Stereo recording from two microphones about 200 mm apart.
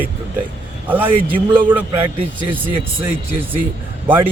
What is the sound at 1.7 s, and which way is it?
A man's voice, 10° right (ahead or behind).